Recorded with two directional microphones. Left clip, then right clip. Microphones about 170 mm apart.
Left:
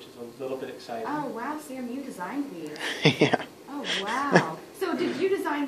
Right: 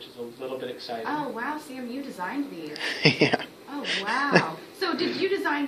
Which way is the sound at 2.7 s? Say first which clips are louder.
Right 2 dB; 5° left (ahead or behind).